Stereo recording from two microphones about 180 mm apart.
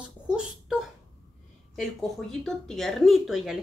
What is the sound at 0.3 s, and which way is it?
Speech, 5° right (ahead or behind).